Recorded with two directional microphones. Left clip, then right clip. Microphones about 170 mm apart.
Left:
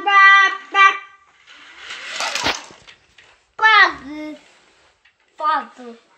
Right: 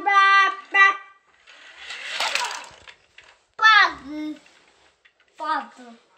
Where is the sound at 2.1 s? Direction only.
5° right (ahead or behind).